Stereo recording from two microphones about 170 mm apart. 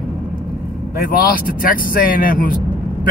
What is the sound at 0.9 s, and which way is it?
Speech, 60° left (ahead or behind).